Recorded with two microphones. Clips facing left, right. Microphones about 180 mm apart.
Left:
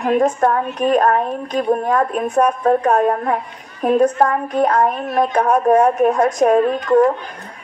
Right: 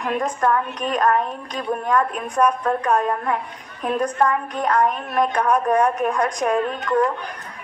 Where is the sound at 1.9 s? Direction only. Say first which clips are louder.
Left 5 dB; 30° left (ahead or behind).